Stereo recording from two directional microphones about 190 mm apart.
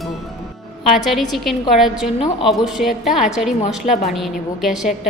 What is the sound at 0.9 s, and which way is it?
A woman's voice, centre (ahead or behind).